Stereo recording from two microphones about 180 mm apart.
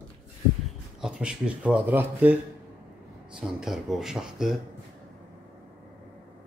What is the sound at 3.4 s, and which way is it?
Speech, 5° right (ahead or behind).